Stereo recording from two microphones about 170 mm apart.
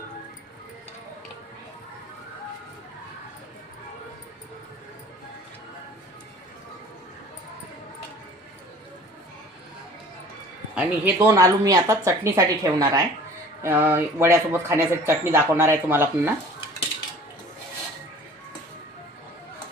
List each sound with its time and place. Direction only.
10.8 s speech: 10° right (ahead or behind)